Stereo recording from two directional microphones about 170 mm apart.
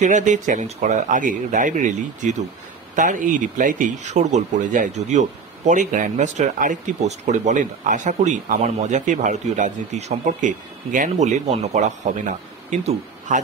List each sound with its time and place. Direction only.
0.0 s speech: 45° right (ahead or behind)